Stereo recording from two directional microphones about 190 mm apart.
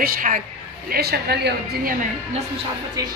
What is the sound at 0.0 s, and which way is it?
A woman's voice, 45° right (ahead or behind).